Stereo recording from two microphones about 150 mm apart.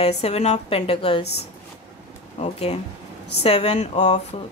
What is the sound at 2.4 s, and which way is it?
A woman's voice, 45° left (ahead or behind).